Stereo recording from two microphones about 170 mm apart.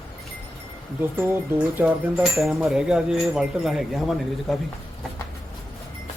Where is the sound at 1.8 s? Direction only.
10° right (ahead or behind).